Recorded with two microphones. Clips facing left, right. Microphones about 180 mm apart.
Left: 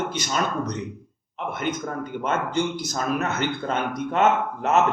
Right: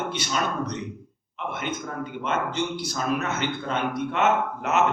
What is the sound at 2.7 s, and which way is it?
Speech, 45° left (ahead or behind).